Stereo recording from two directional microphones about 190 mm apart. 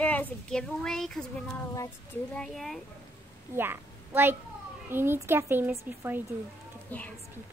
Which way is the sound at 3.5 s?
10° right (ahead or behind).